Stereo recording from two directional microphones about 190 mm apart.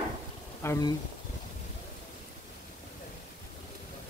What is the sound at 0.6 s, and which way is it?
Speech, 15° left (ahead or behind).